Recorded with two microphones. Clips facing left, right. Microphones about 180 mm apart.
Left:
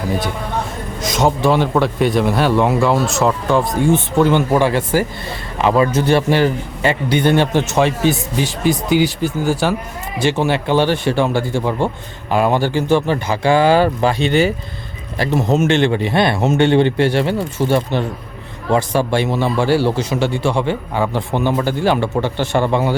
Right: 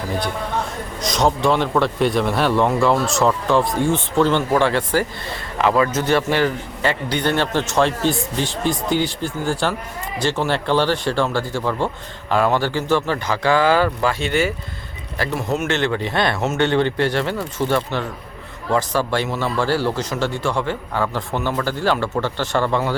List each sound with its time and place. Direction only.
1.0 s a man's voice: 5° left (ahead or behind)
5.6 s a man's voice: 25° left (ahead or behind)
6.3 s a man's voice: 15° left (ahead or behind)